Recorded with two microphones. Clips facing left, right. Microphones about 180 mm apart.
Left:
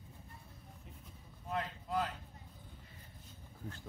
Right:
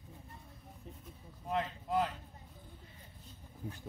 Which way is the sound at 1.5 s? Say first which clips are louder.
Right 3 dB; 25° right (ahead or behind).